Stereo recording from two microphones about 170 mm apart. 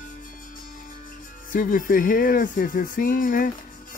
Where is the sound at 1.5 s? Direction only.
55° left (ahead or behind).